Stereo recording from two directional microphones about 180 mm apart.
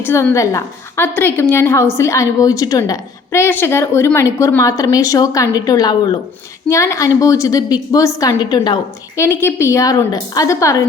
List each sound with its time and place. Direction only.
0.0 s a woman's voice: 15° left (ahead or behind)